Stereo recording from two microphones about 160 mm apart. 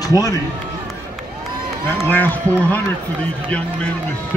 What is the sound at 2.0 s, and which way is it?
Speech, 10° left (ahead or behind).